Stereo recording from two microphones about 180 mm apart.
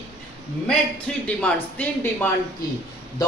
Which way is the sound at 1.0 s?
5° left (ahead or behind).